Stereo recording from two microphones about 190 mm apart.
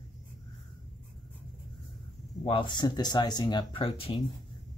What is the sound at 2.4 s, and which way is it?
Speech, 25° left (ahead or behind).